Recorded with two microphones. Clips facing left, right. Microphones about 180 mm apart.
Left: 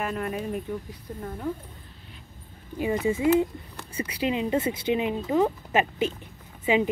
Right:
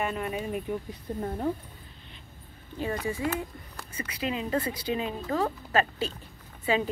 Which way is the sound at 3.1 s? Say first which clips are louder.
Left 9 dB; 20° left (ahead or behind).